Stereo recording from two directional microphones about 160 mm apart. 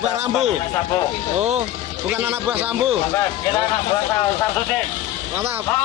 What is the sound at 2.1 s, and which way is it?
Speech, 10° right (ahead or behind).